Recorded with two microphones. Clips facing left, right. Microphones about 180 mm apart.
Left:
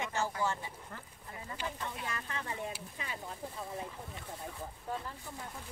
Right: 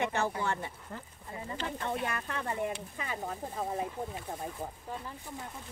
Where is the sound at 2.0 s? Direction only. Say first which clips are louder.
Right 5 dB; 60° right (ahead or behind).